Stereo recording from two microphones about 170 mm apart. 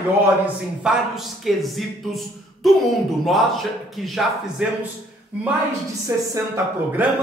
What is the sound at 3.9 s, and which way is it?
Speech, centre (ahead or behind).